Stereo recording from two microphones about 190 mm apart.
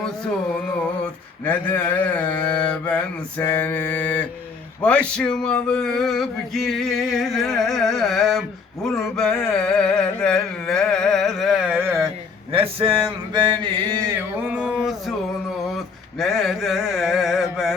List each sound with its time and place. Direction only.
1.5 s mantra: 10° left (ahead or behind)
4.8 s male singing: 5° left (ahead or behind); by 12.0 s 10° right (ahead or behind)
12.5 s mantra: 30° right (ahead or behind)
14.2 s a sound: 10° right (ahead or behind)